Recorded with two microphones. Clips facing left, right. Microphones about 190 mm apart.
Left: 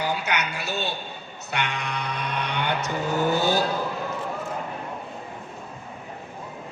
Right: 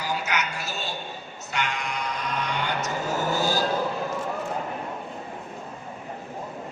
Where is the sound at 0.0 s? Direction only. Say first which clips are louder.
Left 2 dB; 60° left (ahead or behind).